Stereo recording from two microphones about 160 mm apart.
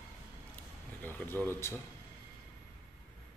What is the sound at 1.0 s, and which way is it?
Speech, 10° left (ahead or behind).